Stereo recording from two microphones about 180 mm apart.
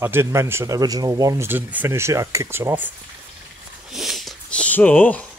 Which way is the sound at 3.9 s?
Centre (ahead or behind).